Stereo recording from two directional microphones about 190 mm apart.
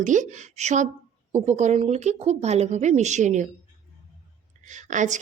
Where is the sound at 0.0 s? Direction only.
40° right (ahead or behind).